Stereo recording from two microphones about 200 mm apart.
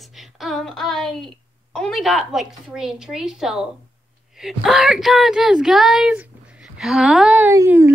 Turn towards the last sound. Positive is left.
turn(degrees=-15)  # may be behind; listen again after turning